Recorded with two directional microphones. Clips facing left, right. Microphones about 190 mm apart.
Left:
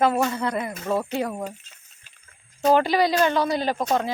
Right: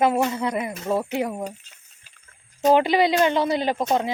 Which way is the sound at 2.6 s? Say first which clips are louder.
Right 1 dB; 20° right (ahead or behind).